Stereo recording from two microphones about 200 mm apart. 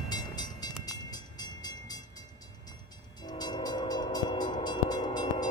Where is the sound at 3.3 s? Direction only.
20° left (ahead or behind).